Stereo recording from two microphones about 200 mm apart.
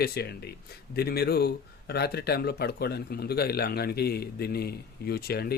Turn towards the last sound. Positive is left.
turn(degrees=50)  # may be behind; listen again after turning